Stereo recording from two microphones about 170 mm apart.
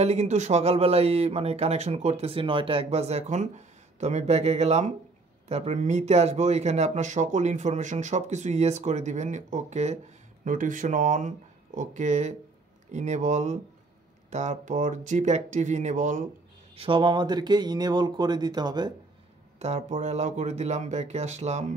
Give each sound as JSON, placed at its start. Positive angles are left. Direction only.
{"t": 0.0, "sound": "speech", "side_deg": -40}
{"t": 16.7, "sound": "speech", "side_deg": -30}
{"t": 19.6, "sound": "speech", "side_deg": -40}